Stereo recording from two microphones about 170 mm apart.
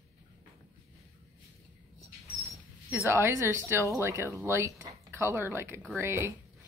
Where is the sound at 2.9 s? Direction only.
10° right (ahead or behind).